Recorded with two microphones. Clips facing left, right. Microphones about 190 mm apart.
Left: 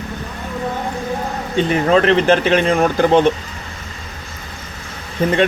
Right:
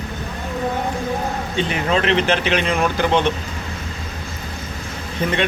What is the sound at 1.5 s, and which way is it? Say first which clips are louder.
Speech: left 7 dB; 40° left (ahead or behind).